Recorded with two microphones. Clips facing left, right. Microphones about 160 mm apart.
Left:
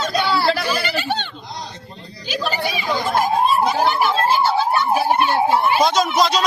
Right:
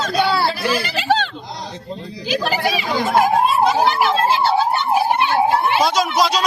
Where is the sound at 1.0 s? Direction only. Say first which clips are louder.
Right 5 dB; 90° right.